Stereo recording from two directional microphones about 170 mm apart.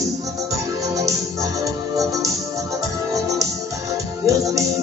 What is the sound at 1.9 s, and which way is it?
Music, 20° right (ahead or behind).